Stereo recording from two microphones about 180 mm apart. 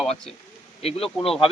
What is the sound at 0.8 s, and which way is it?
Speech, 35° left (ahead or behind).